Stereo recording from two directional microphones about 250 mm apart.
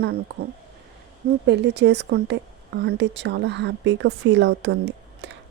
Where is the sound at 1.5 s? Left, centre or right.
Right.